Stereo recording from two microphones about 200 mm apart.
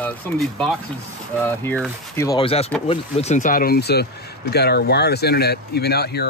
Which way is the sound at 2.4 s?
30° left (ahead or behind).